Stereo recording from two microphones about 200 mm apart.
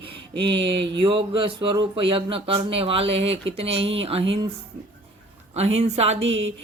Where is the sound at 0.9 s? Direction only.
25° right (ahead or behind).